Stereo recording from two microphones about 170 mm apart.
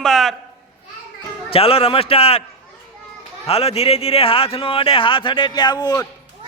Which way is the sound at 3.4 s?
35° left (ahead or behind).